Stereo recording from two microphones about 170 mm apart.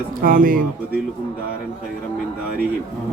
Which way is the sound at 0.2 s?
55° right (ahead or behind).